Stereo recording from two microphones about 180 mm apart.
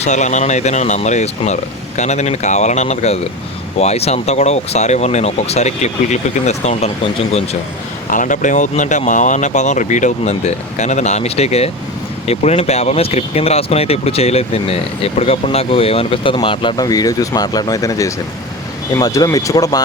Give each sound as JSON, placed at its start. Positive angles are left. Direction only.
{"t": 0.0, "sound": "speech", "side_deg": 40}
{"t": 8.1, "sound": "speech", "side_deg": 45}